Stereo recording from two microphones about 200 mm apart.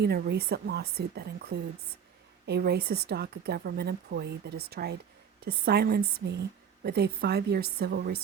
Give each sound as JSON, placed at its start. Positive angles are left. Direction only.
{"t": 0.0, "sound": "speech", "side_deg": -55}